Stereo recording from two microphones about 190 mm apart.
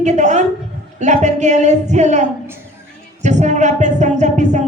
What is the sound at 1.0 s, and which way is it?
Music, 40° right (ahead or behind).